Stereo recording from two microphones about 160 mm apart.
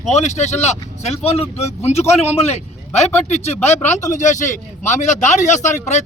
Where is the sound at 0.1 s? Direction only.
45° left (ahead or behind).